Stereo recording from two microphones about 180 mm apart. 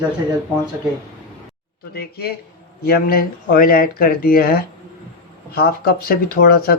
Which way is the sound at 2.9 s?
55° left (ahead or behind).